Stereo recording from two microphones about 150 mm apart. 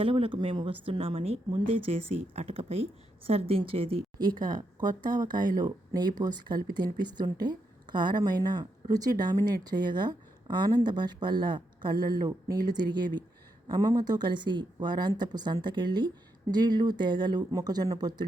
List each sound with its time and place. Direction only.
0.0 s speech: 35° right (ahead or behind)
4.4 s speech: 60° right (ahead or behind)
5.1 s speech: 30° right (ahead or behind)